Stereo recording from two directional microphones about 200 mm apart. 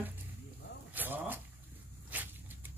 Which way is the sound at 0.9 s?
10° right (ahead or behind).